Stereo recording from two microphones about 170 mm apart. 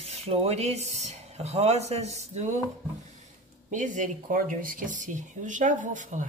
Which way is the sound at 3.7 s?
45° right (ahead or behind).